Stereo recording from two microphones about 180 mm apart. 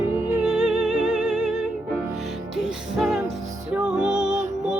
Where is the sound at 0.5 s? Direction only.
5° left (ahead or behind).